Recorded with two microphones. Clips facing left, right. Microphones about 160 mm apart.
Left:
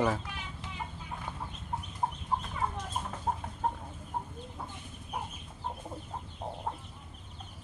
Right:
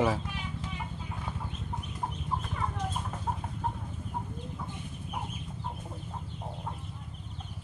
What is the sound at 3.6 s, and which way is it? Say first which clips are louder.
Chicken: left 3 dB; 45° left (ahead or behind).